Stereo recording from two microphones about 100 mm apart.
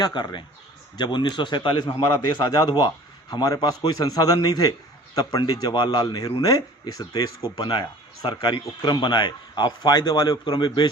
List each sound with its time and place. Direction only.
0.0 s a man's voice: 45° left (ahead or behind)
7.7 s a man's voice: 55° left (ahead or behind)